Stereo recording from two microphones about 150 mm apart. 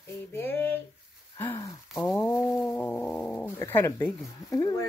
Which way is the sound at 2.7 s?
10° left (ahead or behind).